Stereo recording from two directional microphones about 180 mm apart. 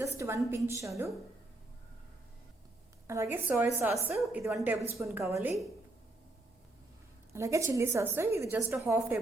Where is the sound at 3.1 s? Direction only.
15° right (ahead or behind).